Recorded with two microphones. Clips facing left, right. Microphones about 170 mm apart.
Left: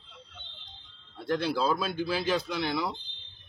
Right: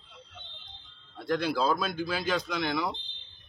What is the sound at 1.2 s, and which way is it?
Speech, 30° left (ahead or behind).